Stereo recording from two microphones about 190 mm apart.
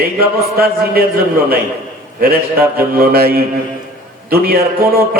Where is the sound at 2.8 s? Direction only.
50° right (ahead or behind).